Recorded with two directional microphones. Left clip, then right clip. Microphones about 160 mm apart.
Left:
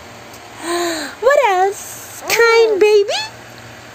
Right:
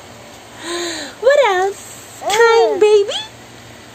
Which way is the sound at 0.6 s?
10° left (ahead or behind).